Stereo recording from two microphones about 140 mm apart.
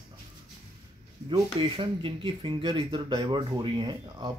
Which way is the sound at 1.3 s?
35° right (ahead or behind).